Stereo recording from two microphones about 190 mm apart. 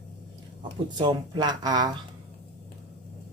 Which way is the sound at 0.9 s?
25° right (ahead or behind).